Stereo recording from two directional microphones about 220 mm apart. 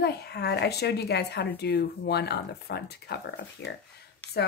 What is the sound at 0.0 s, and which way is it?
A woman's voice, 45° left (ahead or behind).